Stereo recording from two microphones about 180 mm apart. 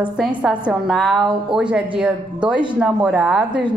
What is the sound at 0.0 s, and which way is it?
A woman's voice, 5° right (ahead or behind).